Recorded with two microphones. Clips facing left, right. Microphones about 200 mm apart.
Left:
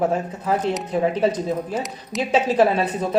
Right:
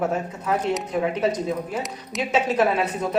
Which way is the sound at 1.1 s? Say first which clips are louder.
Left 2 dB; 30° left (ahead or behind).